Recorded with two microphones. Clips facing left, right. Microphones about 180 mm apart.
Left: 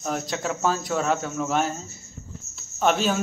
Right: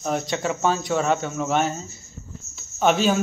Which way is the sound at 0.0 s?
Centre (ahead or behind).